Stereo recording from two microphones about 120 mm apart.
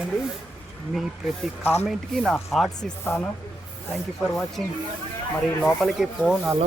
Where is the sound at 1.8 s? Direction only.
Centre (ahead or behind).